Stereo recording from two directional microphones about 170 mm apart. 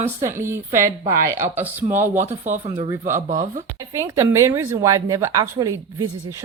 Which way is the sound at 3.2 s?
45° right (ahead or behind).